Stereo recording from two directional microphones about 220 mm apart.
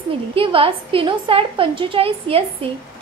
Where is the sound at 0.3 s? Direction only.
25° right (ahead or behind).